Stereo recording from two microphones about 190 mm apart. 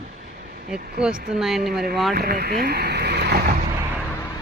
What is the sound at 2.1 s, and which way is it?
Speech, 55° right (ahead or behind).